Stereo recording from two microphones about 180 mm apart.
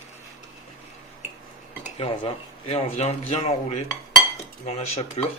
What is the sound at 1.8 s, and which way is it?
Speech, 30° left (ahead or behind).